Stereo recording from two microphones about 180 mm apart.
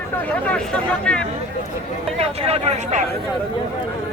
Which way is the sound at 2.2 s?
35° right (ahead or behind).